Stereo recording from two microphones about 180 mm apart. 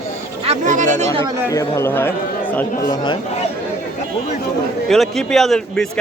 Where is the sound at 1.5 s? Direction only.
15° left (ahead or behind).